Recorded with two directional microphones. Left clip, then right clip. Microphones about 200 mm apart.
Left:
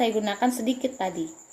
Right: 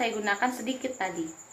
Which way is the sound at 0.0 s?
50° left (ahead or behind).